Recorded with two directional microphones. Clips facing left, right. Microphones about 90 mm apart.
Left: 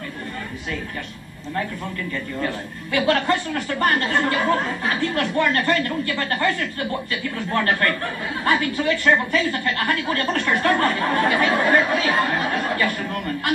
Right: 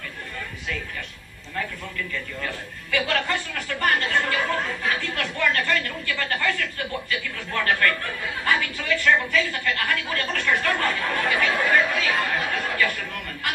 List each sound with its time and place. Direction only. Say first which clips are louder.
2.4 s speech: left 6 dB; 30° left (ahead or behind)